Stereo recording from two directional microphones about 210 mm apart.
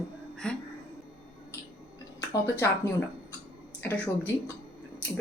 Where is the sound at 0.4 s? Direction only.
5° left (ahead or behind).